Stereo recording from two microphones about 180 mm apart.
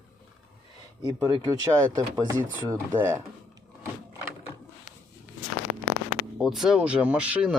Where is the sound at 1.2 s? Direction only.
20° right (ahead or behind).